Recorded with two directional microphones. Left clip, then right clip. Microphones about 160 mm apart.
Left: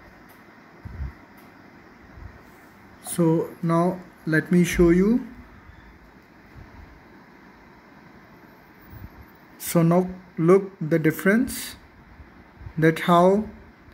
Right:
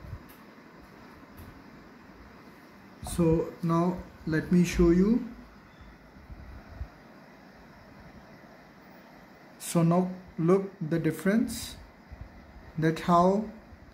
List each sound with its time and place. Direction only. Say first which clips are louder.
3.0 s speech: left 4 dB; 30° left (ahead or behind)
9.6 s speech: left 6 dB; 25° left (ahead or behind)
12.8 s speech: left 6 dB; 30° left (ahead or behind)